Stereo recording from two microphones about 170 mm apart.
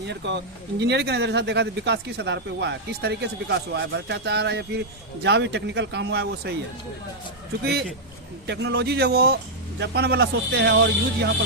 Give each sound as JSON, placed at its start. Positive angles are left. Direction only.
{"t": 0.1, "sound": "speech", "side_deg": -90}
{"t": 7.6, "sound": "speech", "side_deg": -70}
{"t": 8.4, "sound": "speech", "side_deg": -90}